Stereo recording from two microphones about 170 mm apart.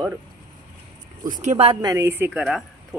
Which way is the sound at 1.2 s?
50° right (ahead or behind).